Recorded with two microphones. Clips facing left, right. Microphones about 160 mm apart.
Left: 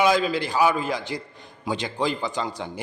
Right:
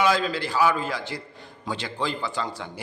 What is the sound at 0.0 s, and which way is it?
A man's voice, 15° left (ahead or behind).